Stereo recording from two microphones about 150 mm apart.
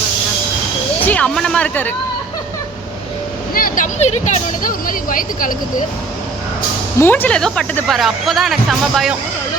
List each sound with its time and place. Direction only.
1.0 s speech: 10° left (ahead or behind)
3.5 s vehicle: 70° left (ahead or behind)
3.9 s speech: 50° left (ahead or behind)
4.6 s speech: 65° left (ahead or behind)
7.0 s speech: 15° left (ahead or behind)